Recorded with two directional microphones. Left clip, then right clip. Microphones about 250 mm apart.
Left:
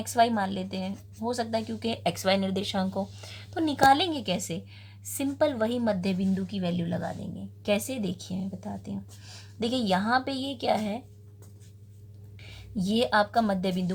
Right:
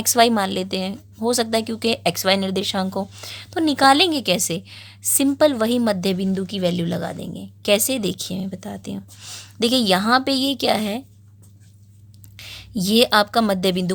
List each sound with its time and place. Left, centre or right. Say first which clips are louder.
0.0 s a woman's voice: right 8 dB; right
12.4 s a woman's voice: right 8 dB; right